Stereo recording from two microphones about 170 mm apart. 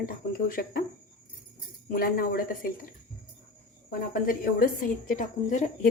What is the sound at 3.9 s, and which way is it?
A woman's voice, 55° left (ahead or behind).